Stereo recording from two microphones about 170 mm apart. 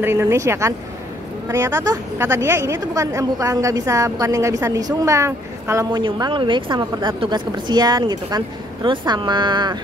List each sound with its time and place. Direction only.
0.0 s a woman's voice: 15° right (ahead or behind)